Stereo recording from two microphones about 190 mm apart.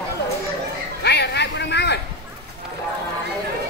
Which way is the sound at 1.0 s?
60° left (ahead or behind).